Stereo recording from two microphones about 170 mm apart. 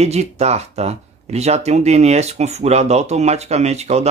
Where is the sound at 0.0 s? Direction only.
40° right (ahead or behind).